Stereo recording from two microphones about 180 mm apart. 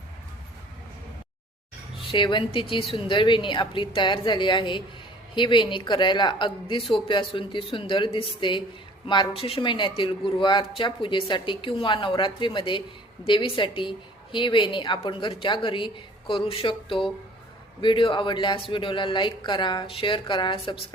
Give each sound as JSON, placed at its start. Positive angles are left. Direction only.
{"t": 2.0, "sound": "speech", "side_deg": 25}